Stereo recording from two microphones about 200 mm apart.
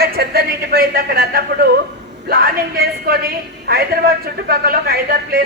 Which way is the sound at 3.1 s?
50° right (ahead or behind).